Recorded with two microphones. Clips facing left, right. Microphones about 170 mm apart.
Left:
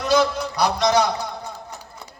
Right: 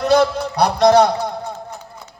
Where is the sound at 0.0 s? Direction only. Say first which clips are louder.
Right 4 dB; 60° right (ahead or behind).